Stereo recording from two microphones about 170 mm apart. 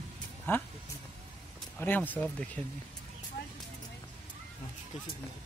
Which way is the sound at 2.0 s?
10° right (ahead or behind).